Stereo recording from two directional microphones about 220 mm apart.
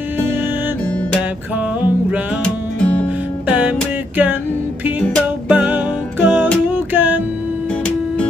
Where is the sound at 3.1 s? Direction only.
5° right (ahead or behind).